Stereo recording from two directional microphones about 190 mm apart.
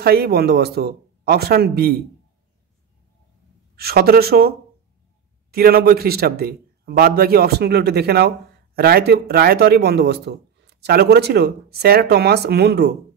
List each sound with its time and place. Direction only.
0.0 s a man's voice: 55° right (ahead or behind)
3.7 s a man's voice: 55° right (ahead or behind)